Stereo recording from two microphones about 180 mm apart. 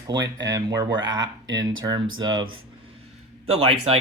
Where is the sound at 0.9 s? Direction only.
90° right.